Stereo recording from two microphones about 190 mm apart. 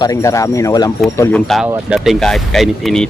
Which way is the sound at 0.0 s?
15° left (ahead or behind).